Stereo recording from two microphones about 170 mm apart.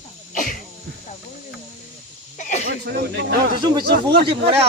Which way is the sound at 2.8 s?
75° right (ahead or behind).